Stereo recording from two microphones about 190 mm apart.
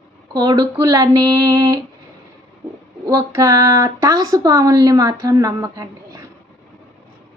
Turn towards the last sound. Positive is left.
turn(degrees=-20)  # may be behind; listen again after turning